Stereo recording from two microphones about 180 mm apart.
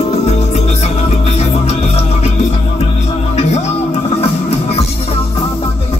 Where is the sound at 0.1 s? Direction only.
35° left (ahead or behind).